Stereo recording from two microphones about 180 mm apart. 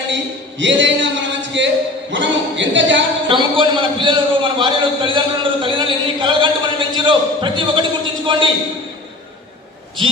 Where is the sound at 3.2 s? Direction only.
30° right (ahead or behind).